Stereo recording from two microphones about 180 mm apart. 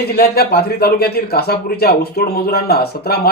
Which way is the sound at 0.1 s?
60° left (ahead or behind).